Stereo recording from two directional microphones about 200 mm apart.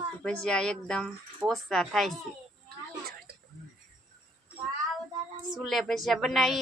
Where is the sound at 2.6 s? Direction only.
50° right (ahead or behind).